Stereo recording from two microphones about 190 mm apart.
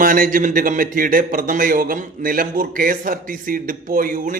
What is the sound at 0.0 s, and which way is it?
A man's voice, 45° right (ahead or behind).